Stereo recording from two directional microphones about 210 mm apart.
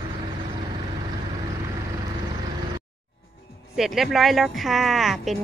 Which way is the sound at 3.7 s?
Centre (ahead or behind).